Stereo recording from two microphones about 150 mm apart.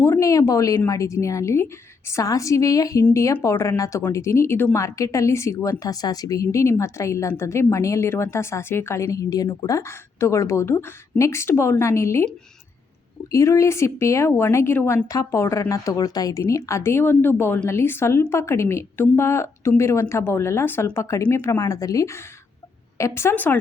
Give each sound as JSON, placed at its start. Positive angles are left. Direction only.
{"t": 0.0, "sound": "speech", "side_deg": 20}
{"t": 13.3, "sound": "a woman's voice", "side_deg": 20}
{"t": 21.6, "sound": "a woman's voice", "side_deg": 25}